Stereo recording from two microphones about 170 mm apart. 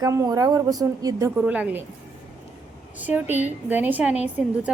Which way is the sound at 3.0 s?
10° right (ahead or behind).